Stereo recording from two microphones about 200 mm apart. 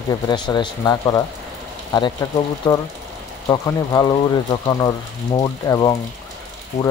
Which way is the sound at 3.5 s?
20° left (ahead or behind).